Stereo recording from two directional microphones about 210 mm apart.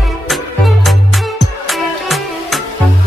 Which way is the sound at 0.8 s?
Centre (ahead or behind).